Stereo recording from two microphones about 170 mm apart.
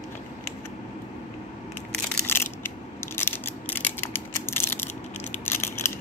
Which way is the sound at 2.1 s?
10° left (ahead or behind).